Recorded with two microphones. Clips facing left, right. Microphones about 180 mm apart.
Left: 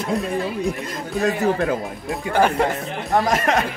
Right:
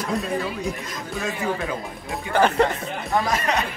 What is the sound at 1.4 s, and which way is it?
Speech, 45° left (ahead or behind).